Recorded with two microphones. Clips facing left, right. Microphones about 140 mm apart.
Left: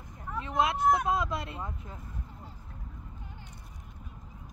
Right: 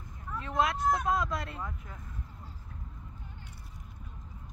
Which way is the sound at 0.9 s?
20° left (ahead or behind).